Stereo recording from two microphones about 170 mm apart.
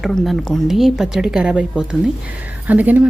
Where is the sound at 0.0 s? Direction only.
Centre (ahead or behind).